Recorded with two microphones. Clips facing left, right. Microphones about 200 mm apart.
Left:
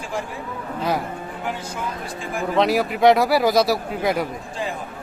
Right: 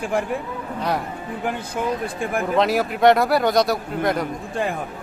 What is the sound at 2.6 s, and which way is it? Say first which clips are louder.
Speech: left 1 dB; centre (ahead or behind).